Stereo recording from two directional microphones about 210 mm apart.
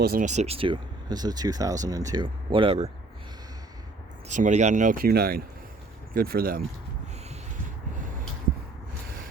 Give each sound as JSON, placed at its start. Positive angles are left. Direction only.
{"t": 0.0, "sound": "speech", "side_deg": -40}
{"t": 4.3, "sound": "speech", "side_deg": -35}